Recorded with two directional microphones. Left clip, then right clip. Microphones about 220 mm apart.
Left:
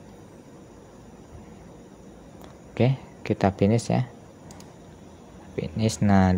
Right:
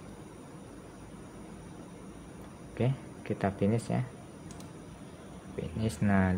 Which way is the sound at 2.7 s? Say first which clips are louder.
Left 9 dB; 35° left (ahead or behind).